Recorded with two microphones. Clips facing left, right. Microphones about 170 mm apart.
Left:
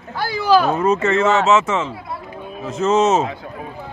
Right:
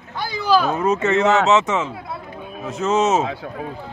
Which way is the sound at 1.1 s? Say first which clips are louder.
Right 1 dB; 20° right (ahead or behind).